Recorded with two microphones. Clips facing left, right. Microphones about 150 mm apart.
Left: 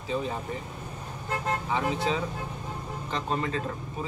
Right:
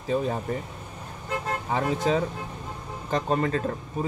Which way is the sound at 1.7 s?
45° right (ahead or behind).